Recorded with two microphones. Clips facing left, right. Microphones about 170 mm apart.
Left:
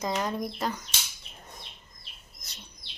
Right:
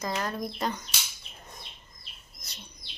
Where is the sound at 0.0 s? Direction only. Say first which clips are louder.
Left 2 dB; 15° left (ahead or behind).